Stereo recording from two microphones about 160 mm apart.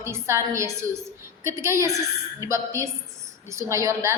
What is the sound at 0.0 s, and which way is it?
A woman's voice, 15° right (ahead or behind).